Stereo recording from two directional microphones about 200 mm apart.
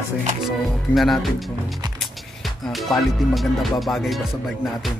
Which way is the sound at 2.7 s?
Centre (ahead or behind).